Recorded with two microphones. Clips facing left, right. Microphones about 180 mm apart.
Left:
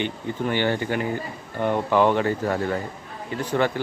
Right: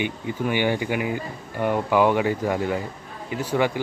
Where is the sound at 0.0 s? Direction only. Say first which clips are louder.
Even; 10° right (ahead or behind).